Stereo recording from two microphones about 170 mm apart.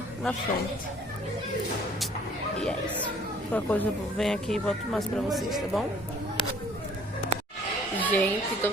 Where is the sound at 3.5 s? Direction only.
10° left (ahead or behind).